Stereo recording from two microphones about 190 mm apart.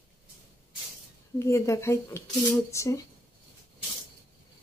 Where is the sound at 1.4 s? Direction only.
15° left (ahead or behind).